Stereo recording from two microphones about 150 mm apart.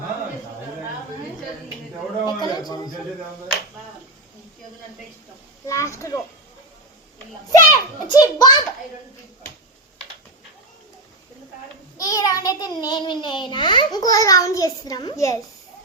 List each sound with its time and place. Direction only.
2.2 s a child's voice: 30° left (ahead or behind)
5.6 s a child's voice: 20° left (ahead or behind)
7.5 s a child's voice: 25° left (ahead or behind)
11.9 s a child's voice: 25° left (ahead or behind)